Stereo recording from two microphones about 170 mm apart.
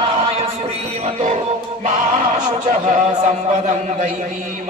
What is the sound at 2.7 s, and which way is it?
Speech, 50° right (ahead or behind).